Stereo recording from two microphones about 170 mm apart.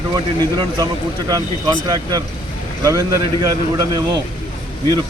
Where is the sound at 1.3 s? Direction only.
25° right (ahead or behind).